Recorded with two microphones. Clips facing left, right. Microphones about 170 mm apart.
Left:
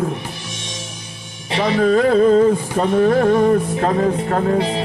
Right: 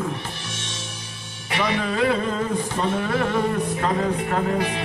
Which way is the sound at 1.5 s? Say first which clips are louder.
Left 5 dB; 30° left (ahead or behind).